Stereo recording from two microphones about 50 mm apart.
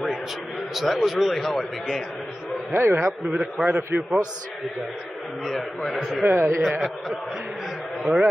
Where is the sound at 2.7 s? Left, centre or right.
Right.